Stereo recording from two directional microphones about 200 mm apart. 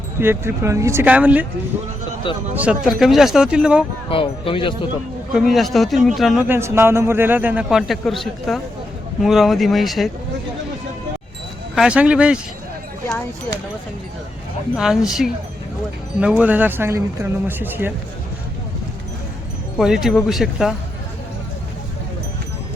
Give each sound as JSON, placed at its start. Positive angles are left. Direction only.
{"t": 0.2, "sound": "a man's voice", "side_deg": -10}
{"t": 2.3, "sound": "speech", "side_deg": 25}
{"t": 2.6, "sound": "a man's voice", "side_deg": -5}
{"t": 4.1, "sound": "speech", "side_deg": 25}
{"t": 5.3, "sound": "a man's voice", "side_deg": 0}
{"t": 6.6, "sound": "a man's voice", "side_deg": -10}
{"t": 11.7, "sound": "a man's voice", "side_deg": -5}
{"t": 14.8, "sound": "a man's voice", "side_deg": 0}
{"t": 16.4, "sound": "a man's voice", "side_deg": -10}
{"t": 19.7, "sound": "a man's voice", "side_deg": 0}